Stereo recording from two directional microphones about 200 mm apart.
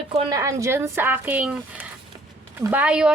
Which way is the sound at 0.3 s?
15° right (ahead or behind).